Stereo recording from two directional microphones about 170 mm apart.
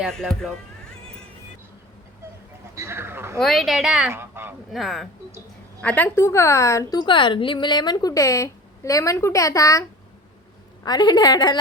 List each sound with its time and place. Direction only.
0.0 s a woman's voice: 5° left (ahead or behind)
2.7 s a sound: 15° right (ahead or behind)
3.4 s a woman's voice: centre (ahead or behind)
4.1 s honk: 15° right (ahead or behind)
4.7 s a woman's voice: centre (ahead or behind); by 9.8 s 20° left (ahead or behind)
10.8 s a woman's voice: 25° left (ahead or behind)